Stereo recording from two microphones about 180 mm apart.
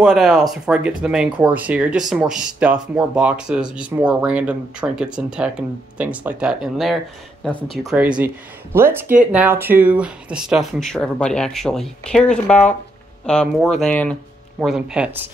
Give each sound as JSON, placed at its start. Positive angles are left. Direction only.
{"t": 0.0, "sound": "speech", "side_deg": 0}